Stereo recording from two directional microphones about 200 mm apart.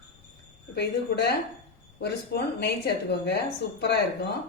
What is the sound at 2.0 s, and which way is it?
A woman's voice, 55° left (ahead or behind).